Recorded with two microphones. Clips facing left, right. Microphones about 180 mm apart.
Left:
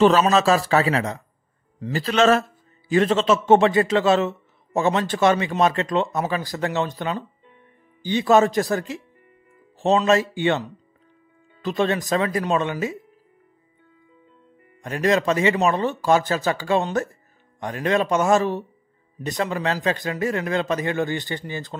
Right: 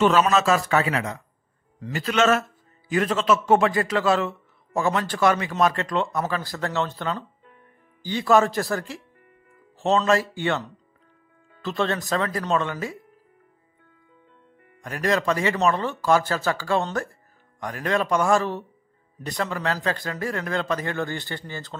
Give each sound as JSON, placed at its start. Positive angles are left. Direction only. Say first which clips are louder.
{"t": 0.0, "sound": "a man's voice", "louder": "left 3 dB", "side_deg": 35}
{"t": 11.6, "sound": "speech", "louder": "left 3 dB", "side_deg": 15}
{"t": 14.8, "sound": "a man's voice", "louder": "left 4 dB", "side_deg": 20}